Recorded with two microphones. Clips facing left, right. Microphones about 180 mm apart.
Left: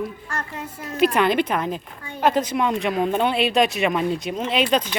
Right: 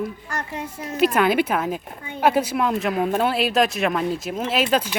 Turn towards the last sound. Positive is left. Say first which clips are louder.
# even
turn(degrees=-5)  # may be behind; listen again after turning